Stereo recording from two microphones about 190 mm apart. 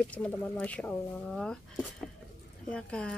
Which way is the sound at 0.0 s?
5° left (ahead or behind).